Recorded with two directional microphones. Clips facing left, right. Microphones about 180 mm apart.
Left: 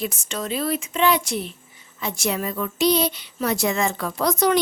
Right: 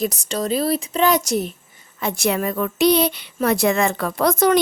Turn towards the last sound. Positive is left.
turn(degrees=-55)  # may be behind; listen again after turning